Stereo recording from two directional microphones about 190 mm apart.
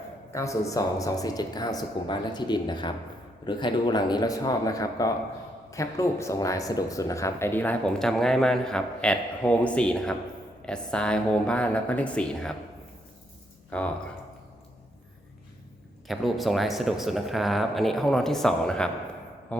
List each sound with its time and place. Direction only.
0.3 s speech: 15° left (ahead or behind)
13.7 s speech: 5° left (ahead or behind)
16.0 s speech: centre (ahead or behind)